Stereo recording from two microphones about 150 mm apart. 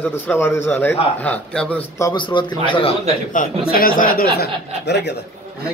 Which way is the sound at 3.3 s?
70° left (ahead or behind).